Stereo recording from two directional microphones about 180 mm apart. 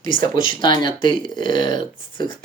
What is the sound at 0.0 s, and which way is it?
Speech, 25° left (ahead or behind).